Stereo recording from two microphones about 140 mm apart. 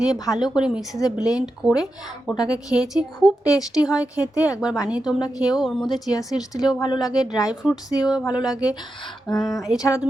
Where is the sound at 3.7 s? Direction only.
5° right (ahead or behind).